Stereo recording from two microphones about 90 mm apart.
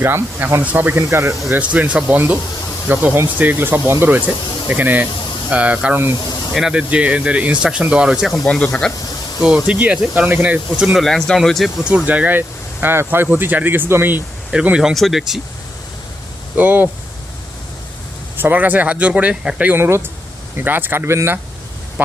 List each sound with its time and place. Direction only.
0.0 s speech: 25° right (ahead or behind)
1.7 s speech: 15° right (ahead or behind)
8.4 s speech: 10° left (ahead or behind)
9.4 s speech: 10° right (ahead or behind)
10.9 s speech: centre (ahead or behind)
11.8 s speech: 10° right (ahead or behind)
14.5 s speech: 10° right (ahead or behind)
16.6 s speech: 20° right (ahead or behind)
18.3 s speech: 20° right (ahead or behind)
19.7 s speech: 25° right (ahead or behind)